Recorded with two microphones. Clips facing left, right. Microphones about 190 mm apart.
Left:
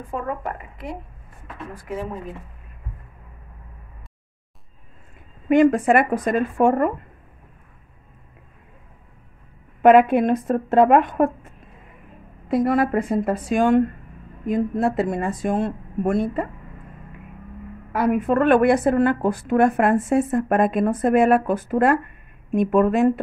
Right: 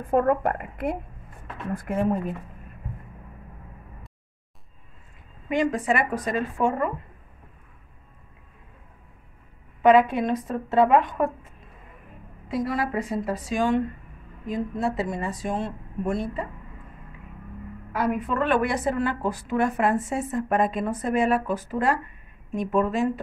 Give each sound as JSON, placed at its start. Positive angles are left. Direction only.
{"t": 0.0, "sound": "a woman's voice", "side_deg": -55}
{"t": 5.5, "sound": "a woman's voice", "side_deg": 55}
{"t": 9.8, "sound": "a woman's voice", "side_deg": 55}
{"t": 12.4, "sound": "a woman's voice", "side_deg": 55}
{"t": 17.9, "sound": "a woman's voice", "side_deg": 50}